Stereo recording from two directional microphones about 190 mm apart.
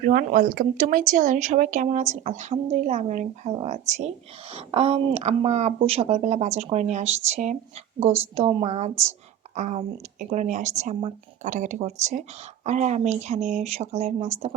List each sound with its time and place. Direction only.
0.0 s speech: 45° right (ahead or behind)